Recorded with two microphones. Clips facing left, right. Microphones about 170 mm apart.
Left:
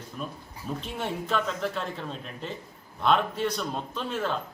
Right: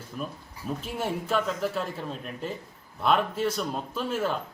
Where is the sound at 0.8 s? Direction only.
5° right (ahead or behind).